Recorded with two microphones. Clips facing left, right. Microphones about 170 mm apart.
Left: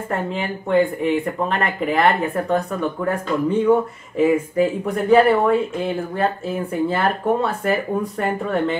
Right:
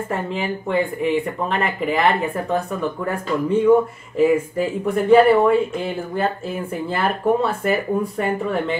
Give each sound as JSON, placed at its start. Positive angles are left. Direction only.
{"t": 0.1, "sound": "speech", "side_deg": 0}